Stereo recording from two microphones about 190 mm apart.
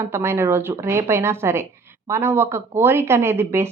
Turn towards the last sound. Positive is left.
turn(degrees=-15)  # may be behind; listen again after turning